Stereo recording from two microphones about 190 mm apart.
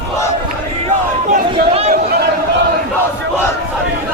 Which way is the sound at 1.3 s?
35° right (ahead or behind).